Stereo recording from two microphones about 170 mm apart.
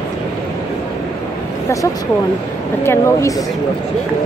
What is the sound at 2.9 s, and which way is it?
Speech, 15° left (ahead or behind).